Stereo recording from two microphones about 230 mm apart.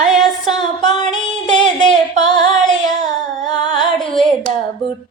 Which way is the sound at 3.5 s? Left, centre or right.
Left.